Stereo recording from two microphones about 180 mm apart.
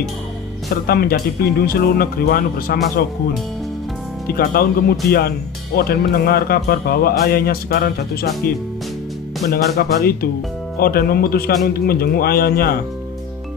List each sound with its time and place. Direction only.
0.8 s speech: 55° left (ahead or behind)
4.3 s speech: 55° left (ahead or behind)
9.5 s speech: 60° left (ahead or behind)